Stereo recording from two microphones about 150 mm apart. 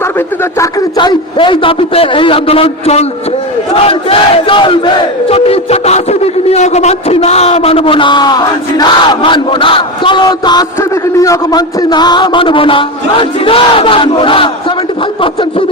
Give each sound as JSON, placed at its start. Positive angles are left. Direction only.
{"t": 0.6, "sound": "a man's voice", "side_deg": 25}